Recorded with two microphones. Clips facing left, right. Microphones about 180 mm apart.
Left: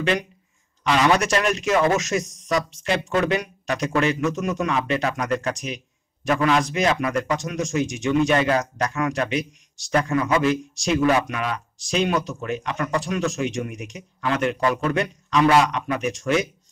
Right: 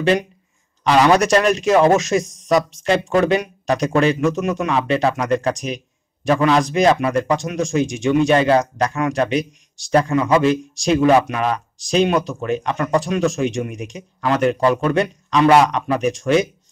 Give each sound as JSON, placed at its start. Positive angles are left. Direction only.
{"t": 0.0, "sound": "a man's voice", "side_deg": -35}